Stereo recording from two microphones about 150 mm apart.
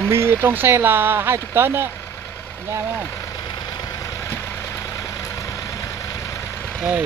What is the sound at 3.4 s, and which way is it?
Vehicle, 30° left (ahead or behind).